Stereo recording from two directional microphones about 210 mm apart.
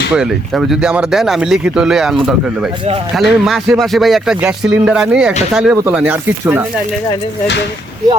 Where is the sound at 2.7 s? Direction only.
25° right (ahead or behind).